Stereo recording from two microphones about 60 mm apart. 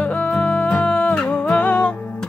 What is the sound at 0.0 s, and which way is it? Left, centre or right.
Music, left.